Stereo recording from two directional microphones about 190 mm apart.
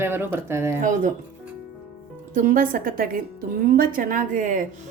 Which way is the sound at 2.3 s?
45° right (ahead or behind).